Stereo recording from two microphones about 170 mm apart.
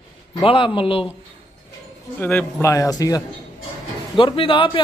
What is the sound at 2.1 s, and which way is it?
A man's voice, 10° left (ahead or behind).